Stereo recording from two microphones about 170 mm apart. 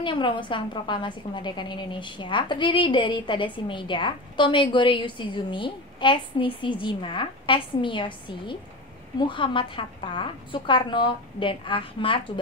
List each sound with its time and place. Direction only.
0.0 s a woman's voice: 30° left (ahead or behind)